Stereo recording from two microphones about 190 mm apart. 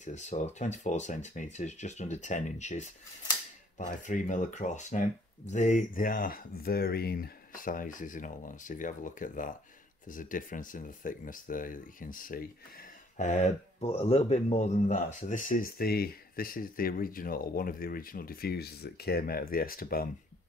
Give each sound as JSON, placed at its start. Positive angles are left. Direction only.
{"t": 0.0, "sound": "speech", "side_deg": 40}